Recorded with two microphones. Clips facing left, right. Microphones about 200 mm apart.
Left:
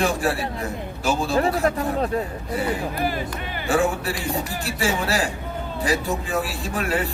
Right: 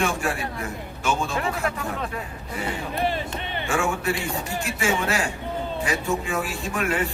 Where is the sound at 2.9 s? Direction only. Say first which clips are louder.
Even; 25° right (ahead or behind).